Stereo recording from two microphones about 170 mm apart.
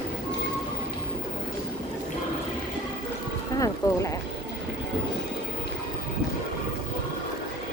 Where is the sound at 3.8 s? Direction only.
20° left (ahead or behind).